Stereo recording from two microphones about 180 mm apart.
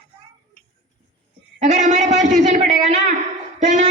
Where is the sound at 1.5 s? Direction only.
40° right (ahead or behind).